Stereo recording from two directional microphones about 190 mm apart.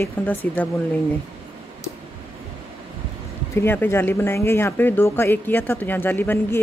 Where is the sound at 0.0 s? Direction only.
10° left (ahead or behind).